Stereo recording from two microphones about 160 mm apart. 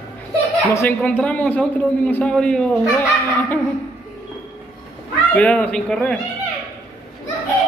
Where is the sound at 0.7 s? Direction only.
10° left (ahead or behind).